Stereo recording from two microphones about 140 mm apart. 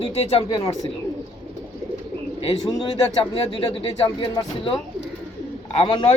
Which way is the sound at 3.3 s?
40° left (ahead or behind).